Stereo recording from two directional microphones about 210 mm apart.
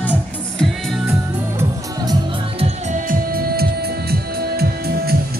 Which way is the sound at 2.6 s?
40° right (ahead or behind).